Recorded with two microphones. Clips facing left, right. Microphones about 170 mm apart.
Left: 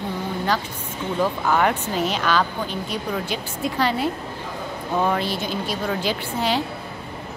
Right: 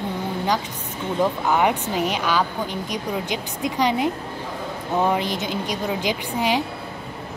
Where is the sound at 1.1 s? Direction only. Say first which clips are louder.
Right 1 dB; 15° right (ahead or behind).